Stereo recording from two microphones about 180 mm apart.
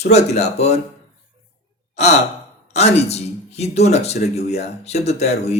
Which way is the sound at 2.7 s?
35° left (ahead or behind).